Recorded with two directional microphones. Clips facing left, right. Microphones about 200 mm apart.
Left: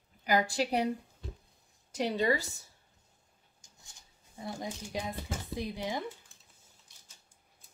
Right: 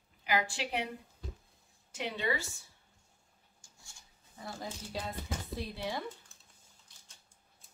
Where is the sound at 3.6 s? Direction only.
20° left (ahead or behind).